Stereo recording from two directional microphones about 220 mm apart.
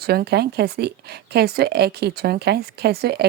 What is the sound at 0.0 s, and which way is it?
Speech, 45° right (ahead or behind).